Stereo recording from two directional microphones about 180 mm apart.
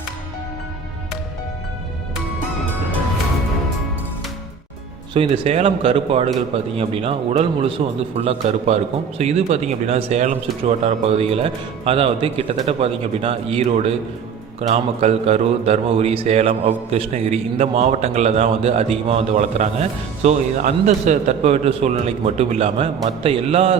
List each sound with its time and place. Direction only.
5.1 s a man's voice: 30° right (ahead or behind)